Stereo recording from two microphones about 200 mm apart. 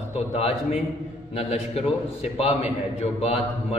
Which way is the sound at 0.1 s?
30° left (ahead or behind).